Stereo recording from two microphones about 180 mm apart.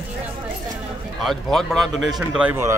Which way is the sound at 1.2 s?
Centre (ahead or behind).